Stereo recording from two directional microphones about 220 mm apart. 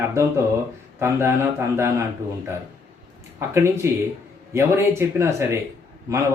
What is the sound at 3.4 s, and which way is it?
Speech, 10° right (ahead or behind).